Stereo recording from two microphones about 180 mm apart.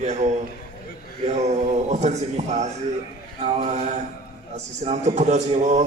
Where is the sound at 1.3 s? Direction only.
40° right (ahead or behind).